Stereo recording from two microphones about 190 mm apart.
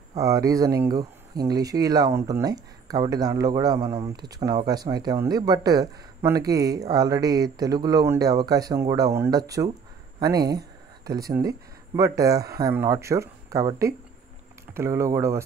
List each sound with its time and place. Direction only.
0.2 s speech: 15° right (ahead or behind)